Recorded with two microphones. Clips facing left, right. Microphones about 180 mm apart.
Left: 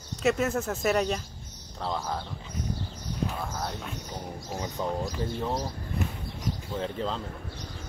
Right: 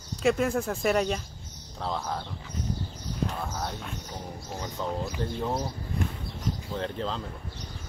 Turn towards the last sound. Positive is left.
turn(degrees=5)  # may be behind; listen again after turning